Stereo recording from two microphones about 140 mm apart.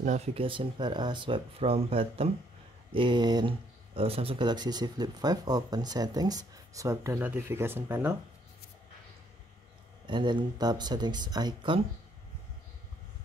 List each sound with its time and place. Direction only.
0.0 s speech: 55° right (ahead or behind); by 8.2 s 15° right (ahead or behind)
10.0 s speech: 35° right (ahead or behind)